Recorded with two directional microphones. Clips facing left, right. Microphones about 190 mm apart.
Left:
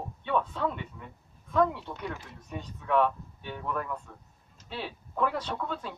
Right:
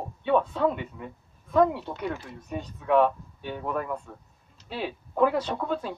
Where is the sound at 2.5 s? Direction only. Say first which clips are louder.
Right 5 dB; 20° right (ahead or behind).